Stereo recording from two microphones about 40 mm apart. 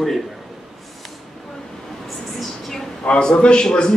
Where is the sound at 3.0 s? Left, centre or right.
Left.